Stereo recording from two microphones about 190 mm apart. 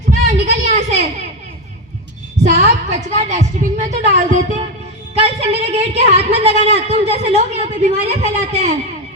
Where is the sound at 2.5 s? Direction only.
35° right (ahead or behind).